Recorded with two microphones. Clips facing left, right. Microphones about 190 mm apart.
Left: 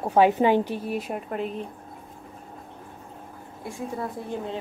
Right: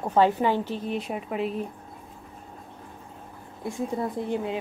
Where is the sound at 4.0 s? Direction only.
15° right (ahead or behind).